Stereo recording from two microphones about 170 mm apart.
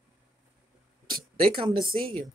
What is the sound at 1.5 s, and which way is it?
Speech, 30° right (ahead or behind).